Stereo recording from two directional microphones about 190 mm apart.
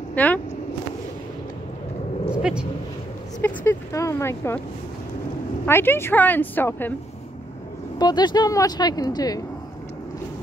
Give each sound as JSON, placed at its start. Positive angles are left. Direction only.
{"t": 0.1, "sound": "speech", "side_deg": 10}
{"t": 2.3, "sound": "dog", "side_deg": -5}
{"t": 3.3, "sound": "a sound", "side_deg": 10}
{"t": 5.7, "sound": "speech", "side_deg": 10}
{"t": 8.0, "sound": "speech", "side_deg": 20}